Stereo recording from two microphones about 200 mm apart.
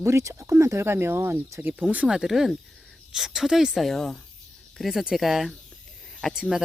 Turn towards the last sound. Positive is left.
turn(degrees=0)  # may be behind; listen again after turning